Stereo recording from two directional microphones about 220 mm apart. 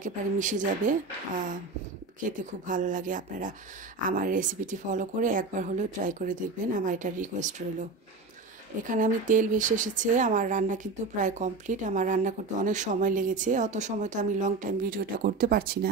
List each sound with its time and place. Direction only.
0.0 s speech: 35° right (ahead or behind)
2.2 s speech: 35° right (ahead or behind)
8.8 s speech: 35° right (ahead or behind)